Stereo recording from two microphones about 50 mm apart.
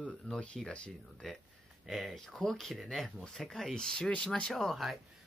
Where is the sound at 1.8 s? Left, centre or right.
Centre.